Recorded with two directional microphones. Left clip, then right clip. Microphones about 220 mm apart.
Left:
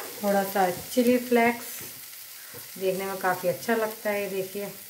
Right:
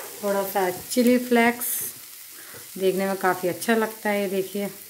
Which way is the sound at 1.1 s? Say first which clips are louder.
Right 2 dB; 50° right (ahead or behind).